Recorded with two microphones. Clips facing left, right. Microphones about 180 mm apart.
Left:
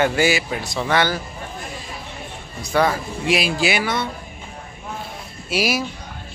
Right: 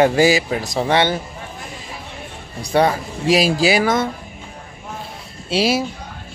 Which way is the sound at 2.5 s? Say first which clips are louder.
Right 3 dB; 35° right (ahead or behind).